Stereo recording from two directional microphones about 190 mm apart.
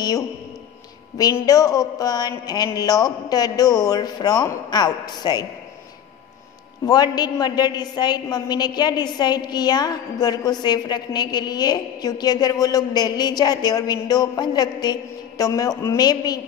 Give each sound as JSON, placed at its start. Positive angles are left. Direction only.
{"t": 1.1, "sound": "a woman's voice", "side_deg": 20}
{"t": 6.9, "sound": "a woman's voice", "side_deg": 20}